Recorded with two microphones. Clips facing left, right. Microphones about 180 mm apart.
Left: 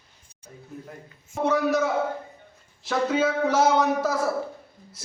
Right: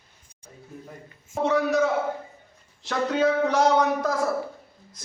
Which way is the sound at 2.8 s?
5° left (ahead or behind).